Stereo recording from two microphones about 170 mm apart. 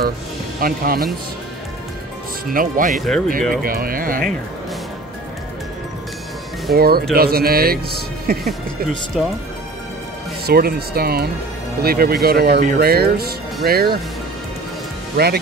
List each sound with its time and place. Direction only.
0.6 s speech: 60° right (ahead or behind)
2.5 s speech: 55° right (ahead or behind)
6.7 s speech: 65° right (ahead or behind)
9.1 s speech: centre (ahead or behind)
10.4 s speech: 65° right (ahead or behind)
15.1 s speech: 65° right (ahead or behind)